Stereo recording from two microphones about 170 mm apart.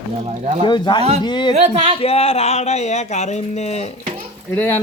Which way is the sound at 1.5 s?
40° right (ahead or behind).